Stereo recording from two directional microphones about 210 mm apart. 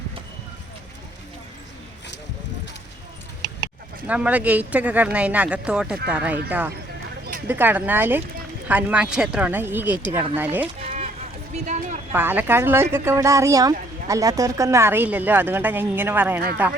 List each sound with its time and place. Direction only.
4.0 s speech: 5° right (ahead or behind)
10.8 s run: 30° right (ahead or behind)
11.5 s speech: 35° right (ahead or behind)
12.1 s speech: 10° right (ahead or behind)